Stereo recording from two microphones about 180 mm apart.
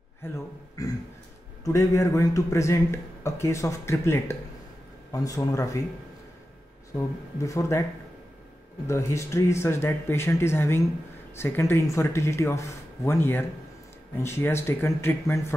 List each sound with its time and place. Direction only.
0.8 s a man's voice: 20° left (ahead or behind)
7.0 s a man's voice: 15° left (ahead or behind)
8.8 s a man's voice: 15° left (ahead or behind)